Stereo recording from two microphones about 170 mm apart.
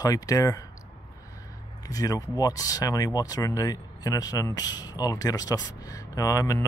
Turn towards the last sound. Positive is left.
turn(degrees=20)  # may be behind; listen again after turning